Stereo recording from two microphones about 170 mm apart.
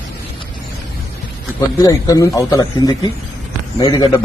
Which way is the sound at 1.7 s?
20° left (ahead or behind).